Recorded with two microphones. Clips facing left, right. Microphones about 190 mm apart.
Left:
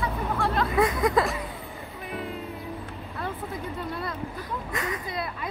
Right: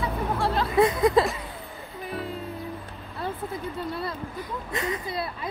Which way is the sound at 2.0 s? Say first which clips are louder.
Right 1 dB; 35° right (ahead or behind).